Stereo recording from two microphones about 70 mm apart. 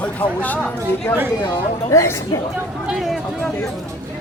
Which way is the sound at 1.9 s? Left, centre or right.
Left.